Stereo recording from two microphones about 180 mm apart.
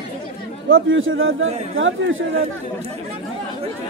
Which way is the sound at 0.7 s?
90° right.